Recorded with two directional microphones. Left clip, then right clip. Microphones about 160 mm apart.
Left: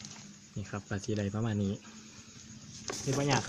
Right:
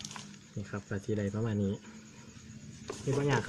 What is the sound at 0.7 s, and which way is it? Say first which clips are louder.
Speech: right 1 dB; 30° left (ahead or behind).